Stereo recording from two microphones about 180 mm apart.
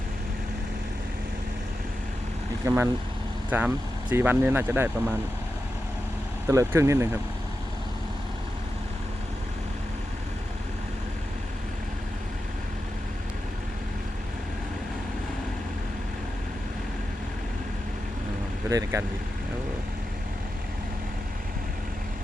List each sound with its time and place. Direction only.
2.6 s speech: 15° right (ahead or behind)
6.5 s speech: 15° right (ahead or behind)
18.7 s speech: 15° right (ahead or behind)